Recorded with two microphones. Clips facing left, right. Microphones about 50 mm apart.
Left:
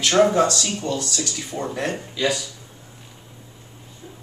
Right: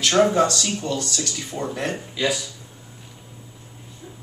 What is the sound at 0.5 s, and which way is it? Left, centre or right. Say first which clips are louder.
Speech: left 1 dB; centre.